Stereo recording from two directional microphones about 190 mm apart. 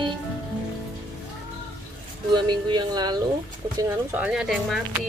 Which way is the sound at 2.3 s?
25° right (ahead or behind).